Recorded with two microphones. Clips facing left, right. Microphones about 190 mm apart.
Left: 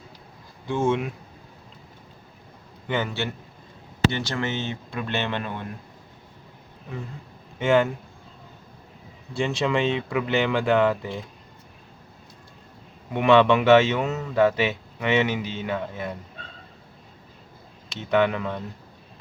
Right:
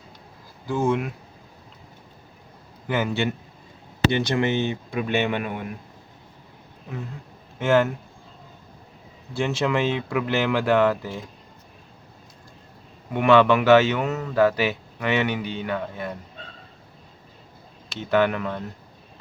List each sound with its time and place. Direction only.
0.7 s speech: centre (ahead or behind)
2.8 s speech: 10° right (ahead or behind)
7.6 s speech: centre (ahead or behind)
9.3 s speech: centre (ahead or behind)
13.2 s speech: centre (ahead or behind)
14.9 s a man's voice: 20° left (ahead or behind)
17.8 s speech: centre (ahead or behind)